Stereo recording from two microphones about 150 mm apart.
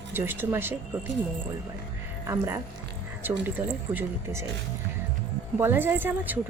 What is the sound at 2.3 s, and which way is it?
Speech, 20° right (ahead or behind).